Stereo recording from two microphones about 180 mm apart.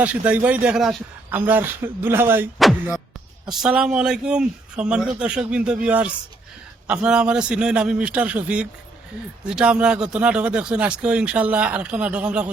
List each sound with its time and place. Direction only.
0.0 s speech: 5° right (ahead or behind)
3.5 s a man's voice: 5° right (ahead or behind)